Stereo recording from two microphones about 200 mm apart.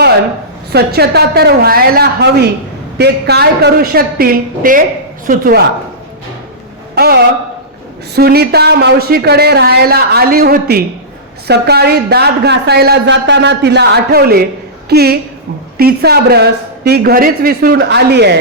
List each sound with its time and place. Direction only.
0.7 s speech: 55° right (ahead or behind)
6.9 s a man's voice: 50° right (ahead or behind)